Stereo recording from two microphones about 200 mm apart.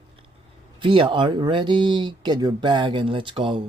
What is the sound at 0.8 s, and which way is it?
Speech, 25° right (ahead or behind).